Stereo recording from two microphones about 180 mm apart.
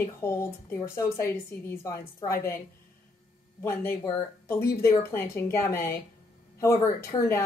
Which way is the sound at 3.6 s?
15° left (ahead or behind).